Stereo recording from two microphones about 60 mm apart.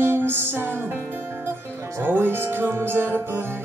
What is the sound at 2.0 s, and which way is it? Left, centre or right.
Music, right.